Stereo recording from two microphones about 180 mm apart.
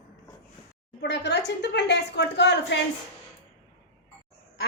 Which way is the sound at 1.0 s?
70° left (ahead or behind).